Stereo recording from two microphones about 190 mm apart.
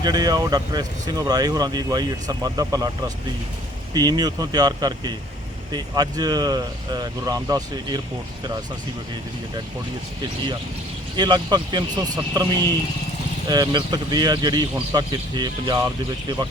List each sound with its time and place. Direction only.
0.0 s speech: 20° right (ahead or behind)
3.9 s speech: 20° right (ahead or behind)
11.2 s speech: 20° right (ahead or behind)